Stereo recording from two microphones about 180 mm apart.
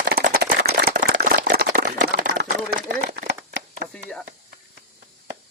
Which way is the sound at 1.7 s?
55° right (ahead or behind).